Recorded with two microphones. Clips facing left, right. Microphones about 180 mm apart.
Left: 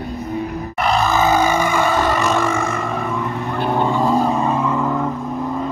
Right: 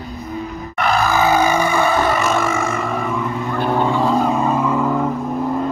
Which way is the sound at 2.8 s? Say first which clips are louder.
Right 1 dB; centre (ahead or behind).